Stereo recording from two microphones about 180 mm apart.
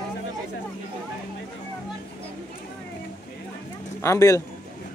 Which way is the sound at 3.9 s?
15° left (ahead or behind).